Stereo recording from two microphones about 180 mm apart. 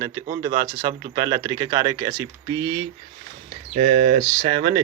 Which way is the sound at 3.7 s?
35° right (ahead or behind).